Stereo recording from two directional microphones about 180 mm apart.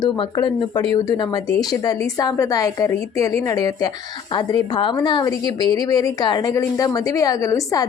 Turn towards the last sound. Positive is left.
turn(degrees=20)  # may be behind; listen again after turning